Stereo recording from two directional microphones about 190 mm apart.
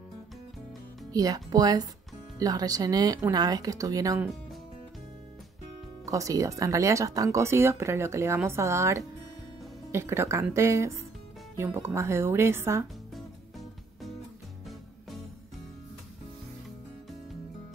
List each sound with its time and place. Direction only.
1.1 s speech: 20° right (ahead or behind)
6.0 s speech: 15° right (ahead or behind)